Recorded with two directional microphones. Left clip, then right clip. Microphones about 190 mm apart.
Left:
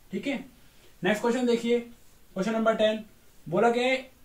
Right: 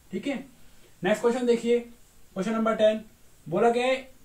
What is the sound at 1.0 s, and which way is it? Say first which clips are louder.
A man's voice: right 2 dB; 25° right (ahead or behind).